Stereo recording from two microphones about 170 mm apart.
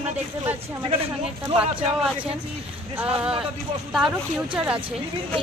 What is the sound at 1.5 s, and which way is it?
Speech, 5° right (ahead or behind).